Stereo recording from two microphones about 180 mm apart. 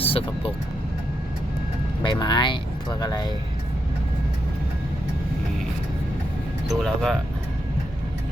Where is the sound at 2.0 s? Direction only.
25° left (ahead or behind).